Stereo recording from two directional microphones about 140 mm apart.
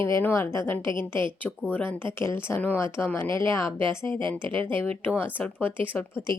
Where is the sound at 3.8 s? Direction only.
35° right (ahead or behind).